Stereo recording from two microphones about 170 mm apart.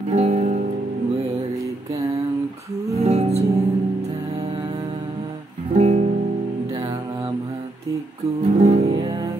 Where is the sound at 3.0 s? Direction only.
35° right (ahead or behind).